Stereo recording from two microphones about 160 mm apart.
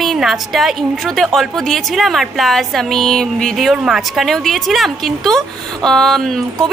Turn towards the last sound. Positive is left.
turn(degrees=0)  # may be behind; listen again after turning